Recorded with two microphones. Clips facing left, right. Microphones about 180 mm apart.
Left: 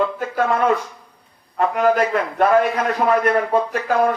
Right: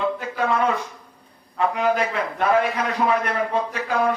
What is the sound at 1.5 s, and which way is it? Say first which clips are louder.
Speech: left 4 dB; 50° left (ahead or behind).